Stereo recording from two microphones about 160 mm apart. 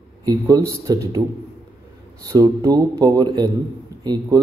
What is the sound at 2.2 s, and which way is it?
A man's voice, 20° right (ahead or behind).